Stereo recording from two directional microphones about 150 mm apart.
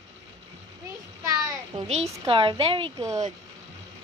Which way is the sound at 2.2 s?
35° right (ahead or behind).